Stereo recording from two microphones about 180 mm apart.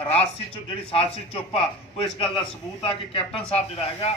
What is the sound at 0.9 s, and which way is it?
A man's voice, 30° left (ahead or behind).